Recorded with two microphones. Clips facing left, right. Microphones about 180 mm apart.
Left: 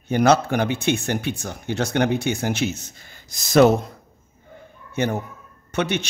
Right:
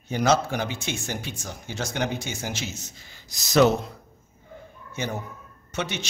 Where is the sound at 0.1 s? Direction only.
60° left (ahead or behind).